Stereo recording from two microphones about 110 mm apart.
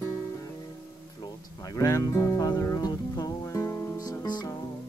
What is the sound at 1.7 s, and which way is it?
Music, 35° left (ahead or behind).